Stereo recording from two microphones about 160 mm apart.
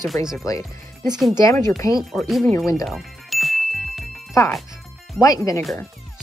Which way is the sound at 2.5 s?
20° left (ahead or behind).